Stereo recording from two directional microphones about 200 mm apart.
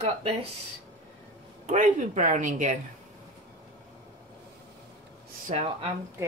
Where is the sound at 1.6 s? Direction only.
40° right (ahead or behind).